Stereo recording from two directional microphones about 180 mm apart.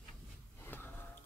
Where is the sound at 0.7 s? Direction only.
10° left (ahead or behind).